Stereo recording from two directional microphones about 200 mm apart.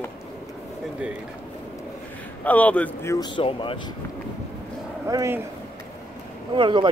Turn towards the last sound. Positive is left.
turn(degrees=-25)  # may be behind; listen again after turning